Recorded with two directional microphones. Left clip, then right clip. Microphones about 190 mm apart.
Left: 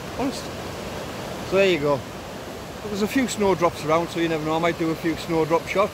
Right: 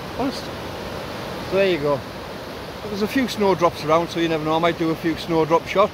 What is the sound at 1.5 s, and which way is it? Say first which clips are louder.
Speech: even; 10° left (ahead or behind).